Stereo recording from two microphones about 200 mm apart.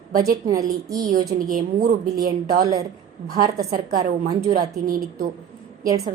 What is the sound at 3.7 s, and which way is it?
A woman's voice, 45° right (ahead or behind).